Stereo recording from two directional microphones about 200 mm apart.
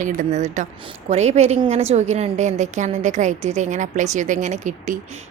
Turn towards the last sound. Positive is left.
turn(degrees=-35)  # may be behind; listen again after turning